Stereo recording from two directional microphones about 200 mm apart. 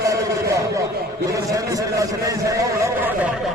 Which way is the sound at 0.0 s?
15° right (ahead or behind).